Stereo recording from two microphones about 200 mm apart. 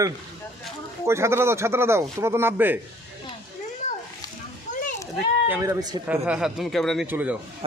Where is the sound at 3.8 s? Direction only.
40° left (ahead or behind).